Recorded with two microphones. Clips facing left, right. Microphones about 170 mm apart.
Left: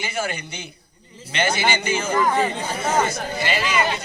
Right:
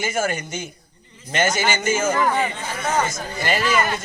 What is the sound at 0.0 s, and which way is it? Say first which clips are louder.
A man's voice: right 4 dB; 45° right (ahead or behind).